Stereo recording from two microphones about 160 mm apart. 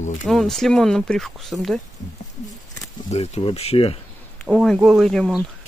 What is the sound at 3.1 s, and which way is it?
Speech, 40° left (ahead or behind).